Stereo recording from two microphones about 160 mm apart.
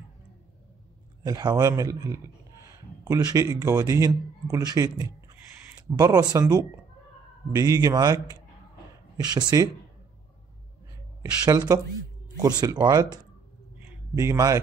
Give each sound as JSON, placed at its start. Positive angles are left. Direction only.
{"t": 1.2, "sound": "speech", "side_deg": -25}
{"t": 11.4, "sound": "speech", "side_deg": -25}